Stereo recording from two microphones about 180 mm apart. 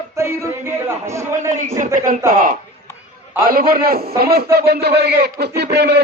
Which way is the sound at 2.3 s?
50° right (ahead or behind).